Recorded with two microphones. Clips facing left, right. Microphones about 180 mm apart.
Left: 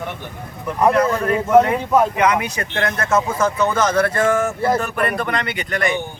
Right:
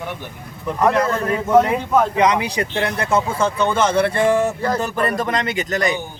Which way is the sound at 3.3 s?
30° right (ahead or behind).